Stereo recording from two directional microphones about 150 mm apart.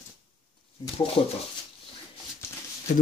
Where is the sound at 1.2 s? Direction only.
35° left (ahead or behind).